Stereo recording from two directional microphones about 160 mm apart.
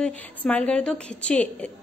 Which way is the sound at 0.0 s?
10° left (ahead or behind).